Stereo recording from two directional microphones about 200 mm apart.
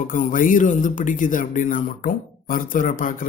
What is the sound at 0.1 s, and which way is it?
Mantra, 40° left (ahead or behind).